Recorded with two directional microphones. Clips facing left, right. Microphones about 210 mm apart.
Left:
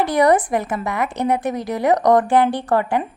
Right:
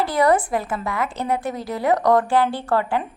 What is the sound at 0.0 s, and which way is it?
A woman's voice, 20° left (ahead or behind).